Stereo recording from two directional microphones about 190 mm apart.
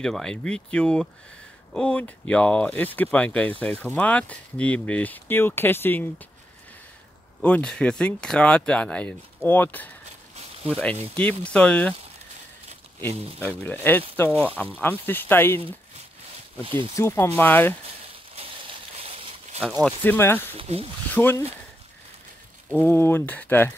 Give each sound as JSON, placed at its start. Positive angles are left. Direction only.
{"t": 0.0, "sound": "speech", "side_deg": 5}
{"t": 7.4, "sound": "speech", "side_deg": 5}
{"t": 11.1, "sound": "speech", "side_deg": 5}
{"t": 13.4, "sound": "speech", "side_deg": 10}
{"t": 16.6, "sound": "speech", "side_deg": -25}
{"t": 16.9, "sound": "speech", "side_deg": 15}
{"t": 18.3, "sound": "a sound", "side_deg": -30}
{"t": 20.0, "sound": "speech", "side_deg": 10}
{"t": 20.5, "sound": "speech", "side_deg": -30}
{"t": 21.1, "sound": "speech", "side_deg": 10}
{"t": 22.7, "sound": "speech", "side_deg": 10}